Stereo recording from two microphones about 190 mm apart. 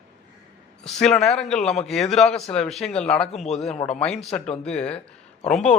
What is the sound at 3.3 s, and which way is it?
Speech, 35° left (ahead or behind).